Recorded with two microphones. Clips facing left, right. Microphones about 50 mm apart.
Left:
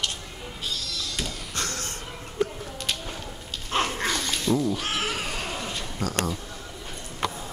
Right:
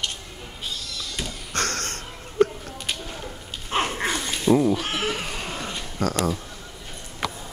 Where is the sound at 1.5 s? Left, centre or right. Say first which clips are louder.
Right 4 dB; right.